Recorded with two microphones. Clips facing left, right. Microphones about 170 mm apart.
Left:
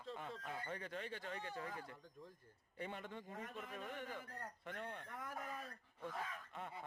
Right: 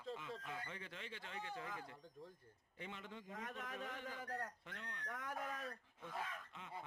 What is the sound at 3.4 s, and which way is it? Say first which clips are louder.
Speech: right 1 dB; 90° right.